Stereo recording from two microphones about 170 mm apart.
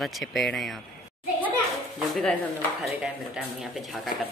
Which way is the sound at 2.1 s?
5° left (ahead or behind).